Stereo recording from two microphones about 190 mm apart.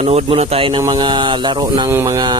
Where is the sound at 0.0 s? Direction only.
35° right (ahead or behind).